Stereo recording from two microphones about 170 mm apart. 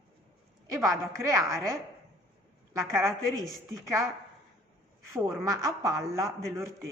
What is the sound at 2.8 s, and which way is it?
A woman's voice, 15° right (ahead or behind).